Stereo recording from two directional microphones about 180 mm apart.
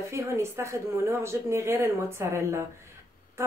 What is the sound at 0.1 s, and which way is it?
A woman's voice, 15° right (ahead or behind).